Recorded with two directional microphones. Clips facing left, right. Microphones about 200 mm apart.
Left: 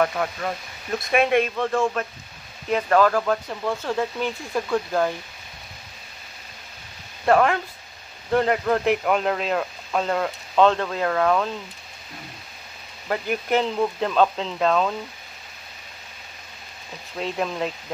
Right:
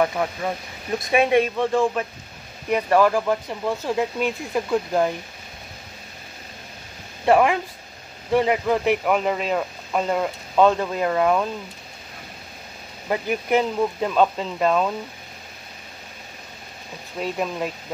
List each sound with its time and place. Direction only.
0.0 s speech: 15° right (ahead or behind)
7.2 s speech: 15° right (ahead or behind)
13.1 s speech: 10° right (ahead or behind)
17.2 s speech: 5° right (ahead or behind)